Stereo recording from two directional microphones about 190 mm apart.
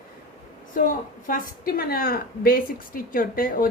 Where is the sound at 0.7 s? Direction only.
45° left (ahead or behind).